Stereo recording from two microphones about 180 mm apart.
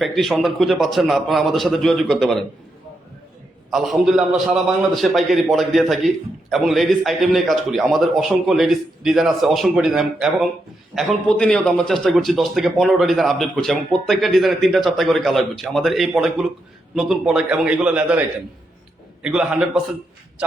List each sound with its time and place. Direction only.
0.0 s a man's voice: centre (ahead or behind)
3.7 s a man's voice: centre (ahead or behind)
19.2 s a man's voice: 5° right (ahead or behind)